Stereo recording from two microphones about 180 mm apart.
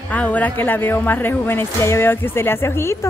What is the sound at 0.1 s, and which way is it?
Speech, 10° left (ahead or behind).